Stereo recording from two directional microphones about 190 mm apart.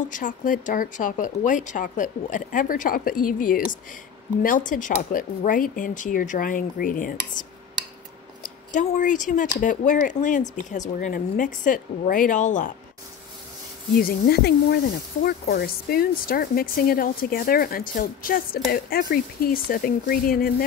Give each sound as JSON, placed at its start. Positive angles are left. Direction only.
{"t": 0.0, "sound": "speech", "side_deg": 45}
{"t": 7.4, "sound": "cutlery", "side_deg": 45}
{"t": 8.4, "sound": "speech", "side_deg": 40}
{"t": 13.9, "sound": "speech", "side_deg": 55}